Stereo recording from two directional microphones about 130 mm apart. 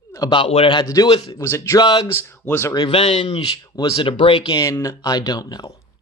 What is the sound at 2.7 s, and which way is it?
Speech, 40° left (ahead or behind).